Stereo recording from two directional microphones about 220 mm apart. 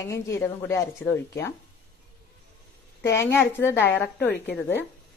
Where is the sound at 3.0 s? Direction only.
15° left (ahead or behind).